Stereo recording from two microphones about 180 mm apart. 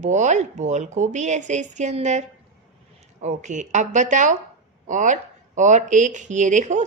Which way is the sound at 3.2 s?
40° right (ahead or behind).